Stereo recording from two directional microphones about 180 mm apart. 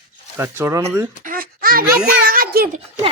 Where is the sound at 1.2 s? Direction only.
50° right (ahead or behind).